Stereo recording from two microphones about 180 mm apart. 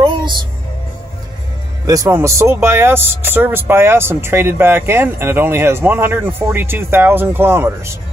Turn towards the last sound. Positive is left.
turn(degrees=-10)  # may be behind; listen again after turning